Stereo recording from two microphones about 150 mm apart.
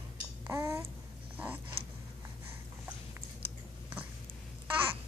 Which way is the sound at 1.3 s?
10° right (ahead or behind).